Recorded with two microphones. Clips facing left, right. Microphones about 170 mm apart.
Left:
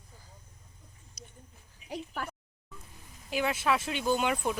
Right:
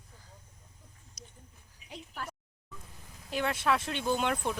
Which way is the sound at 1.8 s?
75° left (ahead or behind).